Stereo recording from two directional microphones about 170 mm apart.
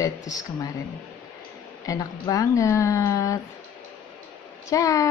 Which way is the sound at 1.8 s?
20° left (ahead or behind).